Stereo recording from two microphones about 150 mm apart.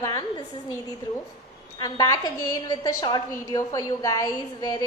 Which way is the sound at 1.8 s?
25° left (ahead or behind).